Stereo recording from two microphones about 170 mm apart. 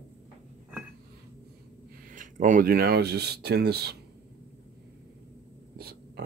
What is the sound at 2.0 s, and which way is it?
Speech, 50° right (ahead or behind).